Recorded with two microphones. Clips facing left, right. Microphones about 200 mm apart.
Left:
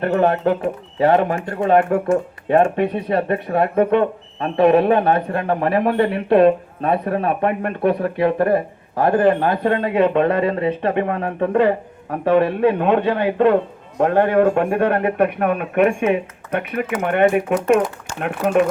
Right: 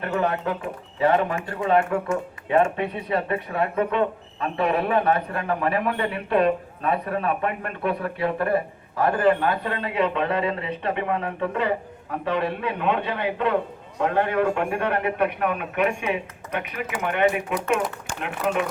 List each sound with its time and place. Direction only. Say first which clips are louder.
0.0 s speech: left 8 dB; 50° left (ahead or behind)